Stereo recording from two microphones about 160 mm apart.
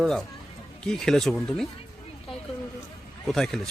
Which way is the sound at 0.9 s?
5° left (ahead or behind).